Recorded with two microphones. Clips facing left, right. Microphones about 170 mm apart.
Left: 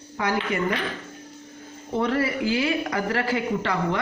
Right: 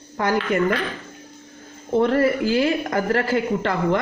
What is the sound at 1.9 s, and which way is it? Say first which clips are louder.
A woman's voice: right 6 dB; 50° right (ahead or behind).